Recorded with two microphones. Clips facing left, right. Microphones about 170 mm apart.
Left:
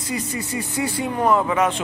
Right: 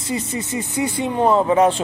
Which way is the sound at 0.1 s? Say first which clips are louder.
Right 3 dB; 25° right (ahead or behind).